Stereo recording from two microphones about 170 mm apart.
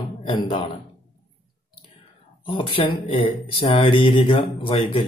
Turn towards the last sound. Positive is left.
turn(degrees=30)  # may be behind; listen again after turning